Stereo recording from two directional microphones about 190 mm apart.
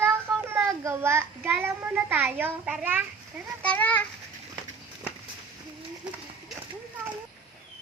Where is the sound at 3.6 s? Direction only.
10° left (ahead or behind).